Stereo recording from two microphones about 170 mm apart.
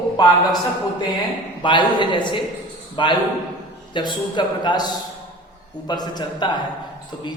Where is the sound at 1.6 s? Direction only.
30° left (ahead or behind).